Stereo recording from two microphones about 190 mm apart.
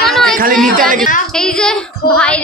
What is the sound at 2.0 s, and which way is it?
Music, 55° left (ahead or behind).